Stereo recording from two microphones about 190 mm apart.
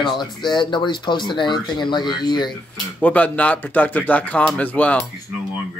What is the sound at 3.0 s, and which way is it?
Speech, 10° left (ahead or behind).